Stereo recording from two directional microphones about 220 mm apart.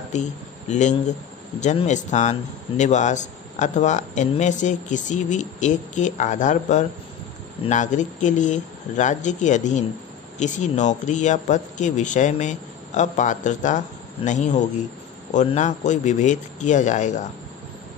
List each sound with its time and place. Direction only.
0.1 s speech: 30° left (ahead or behind)